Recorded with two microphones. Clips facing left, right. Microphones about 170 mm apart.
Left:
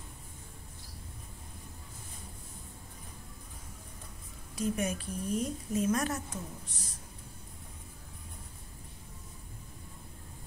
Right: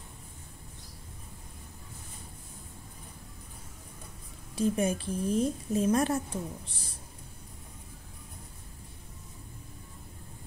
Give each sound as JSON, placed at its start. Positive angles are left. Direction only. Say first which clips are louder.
{"t": 4.6, "sound": "a woman's voice", "louder": "right 5 dB", "side_deg": -30}